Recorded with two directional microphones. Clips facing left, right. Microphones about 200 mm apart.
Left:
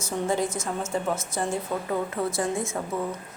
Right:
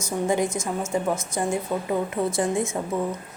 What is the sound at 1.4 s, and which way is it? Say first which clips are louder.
Speech: right 3 dB; 10° right (ahead or behind).